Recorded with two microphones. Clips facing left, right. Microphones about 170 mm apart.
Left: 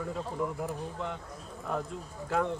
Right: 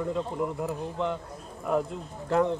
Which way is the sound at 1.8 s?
30° right (ahead or behind).